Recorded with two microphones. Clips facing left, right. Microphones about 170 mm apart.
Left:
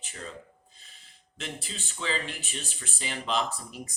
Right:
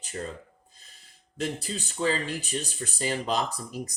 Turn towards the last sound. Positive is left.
turn(degrees=-40)  # may be behind; listen again after turning